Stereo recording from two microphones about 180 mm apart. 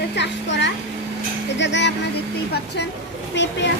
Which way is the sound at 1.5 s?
80° left.